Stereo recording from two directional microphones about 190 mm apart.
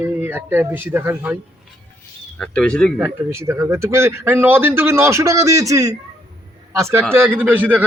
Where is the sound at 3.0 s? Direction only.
15° right (ahead or behind).